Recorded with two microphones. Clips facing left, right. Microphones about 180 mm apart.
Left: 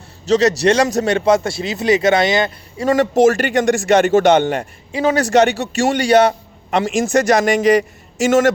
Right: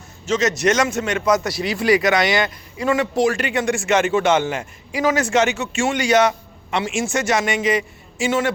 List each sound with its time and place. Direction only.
0.3 s a man's voice: 35° left (ahead or behind)
2.8 s a man's voice: 40° left (ahead or behind)